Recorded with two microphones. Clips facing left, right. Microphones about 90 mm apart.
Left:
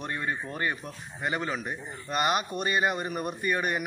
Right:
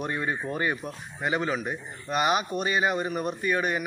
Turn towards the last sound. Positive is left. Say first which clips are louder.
# right 2 dB
turn(degrees=0)  # may be behind; listen again after turning